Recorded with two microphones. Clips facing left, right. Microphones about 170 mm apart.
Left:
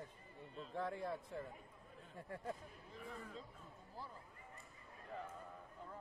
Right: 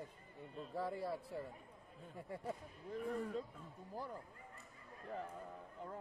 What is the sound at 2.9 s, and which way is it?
Speech, 55° right (ahead or behind).